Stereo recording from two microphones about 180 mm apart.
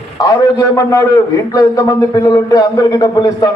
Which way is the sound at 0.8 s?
20° left (ahead or behind).